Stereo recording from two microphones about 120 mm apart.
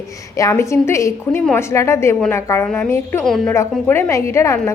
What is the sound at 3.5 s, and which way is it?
A woman's voice, 20° left (ahead or behind).